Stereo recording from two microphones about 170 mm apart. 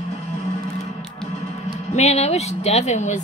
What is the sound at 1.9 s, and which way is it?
Speech, 40° left (ahead or behind).